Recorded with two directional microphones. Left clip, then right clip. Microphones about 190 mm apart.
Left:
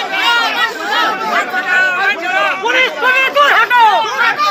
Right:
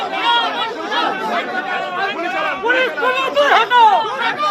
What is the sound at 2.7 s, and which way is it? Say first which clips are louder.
Chatter: left 2 dB; 30° left (ahead or behind).